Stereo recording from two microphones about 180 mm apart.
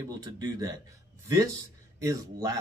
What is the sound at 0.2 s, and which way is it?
Speech, 20° right (ahead or behind).